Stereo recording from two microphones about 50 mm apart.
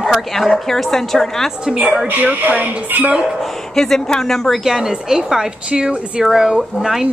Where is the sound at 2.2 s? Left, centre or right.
Right.